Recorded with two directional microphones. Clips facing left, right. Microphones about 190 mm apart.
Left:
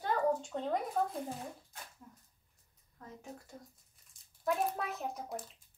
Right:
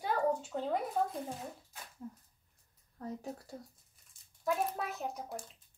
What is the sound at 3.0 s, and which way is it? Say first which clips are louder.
Speech: right 7 dB; 35° right (ahead or behind).